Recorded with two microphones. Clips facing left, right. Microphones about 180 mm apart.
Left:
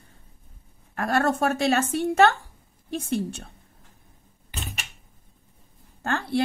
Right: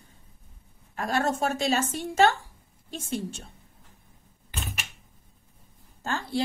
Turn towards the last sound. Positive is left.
turn(degrees=65)  # may be behind; listen again after turning